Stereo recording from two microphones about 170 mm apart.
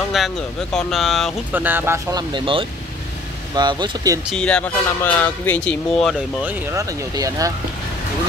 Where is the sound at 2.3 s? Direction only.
30° right (ahead or behind).